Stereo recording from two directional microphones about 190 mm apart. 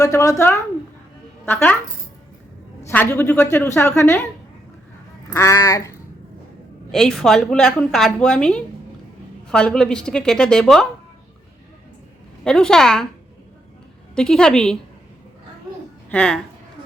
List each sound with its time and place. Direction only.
0.0 s speech: 15° left (ahead or behind)
2.9 s speech: 10° left (ahead or behind)
5.3 s speech: 15° left (ahead or behind)
6.9 s a woman's voice: centre (ahead or behind)
12.5 s a woman's voice: 5° left (ahead or behind)
14.2 s a woman's voice: 5° left (ahead or behind)
16.0 s speech: 5° left (ahead or behind)